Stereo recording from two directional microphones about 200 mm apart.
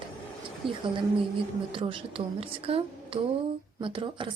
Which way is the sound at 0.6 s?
25° right (ahead or behind).